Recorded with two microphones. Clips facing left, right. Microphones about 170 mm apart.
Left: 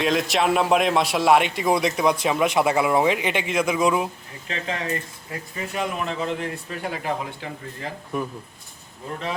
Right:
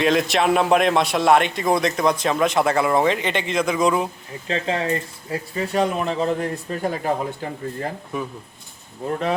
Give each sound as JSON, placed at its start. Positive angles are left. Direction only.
{"t": 0.0, "sound": "a man's voice", "side_deg": 0}
{"t": 4.4, "sound": "speech", "side_deg": -30}
{"t": 8.1, "sound": "speech", "side_deg": 0}